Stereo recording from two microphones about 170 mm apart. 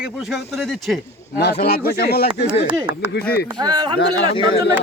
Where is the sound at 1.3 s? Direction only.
75° left (ahead or behind).